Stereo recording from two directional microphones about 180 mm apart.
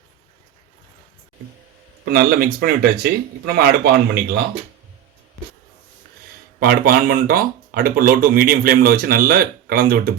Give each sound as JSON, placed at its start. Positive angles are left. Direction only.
{"t": 2.0, "sound": "speech", "side_deg": -55}
{"t": 6.6, "sound": "speech", "side_deg": -55}